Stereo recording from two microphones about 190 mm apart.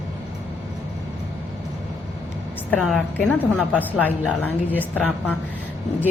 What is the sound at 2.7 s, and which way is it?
A woman's voice, 10° left (ahead or behind).